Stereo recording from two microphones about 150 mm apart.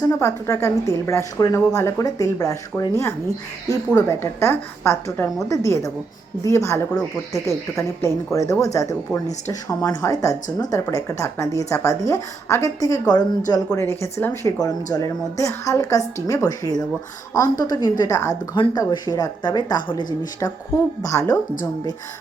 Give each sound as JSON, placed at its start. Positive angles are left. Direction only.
{"t": 0.1, "sound": "a woman's voice", "side_deg": 20}
{"t": 3.9, "sound": "a woman's voice", "side_deg": 15}